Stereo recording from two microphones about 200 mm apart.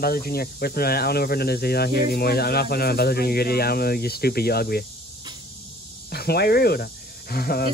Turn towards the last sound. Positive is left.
turn(degrees=50)  # may be behind; listen again after turning